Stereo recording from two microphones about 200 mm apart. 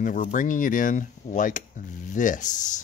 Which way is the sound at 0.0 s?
40° left (ahead or behind).